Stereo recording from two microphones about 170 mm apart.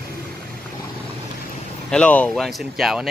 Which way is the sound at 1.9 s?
5° left (ahead or behind).